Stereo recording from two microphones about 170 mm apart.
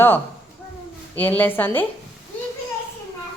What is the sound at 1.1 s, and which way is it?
Speech, 10° left (ahead or behind).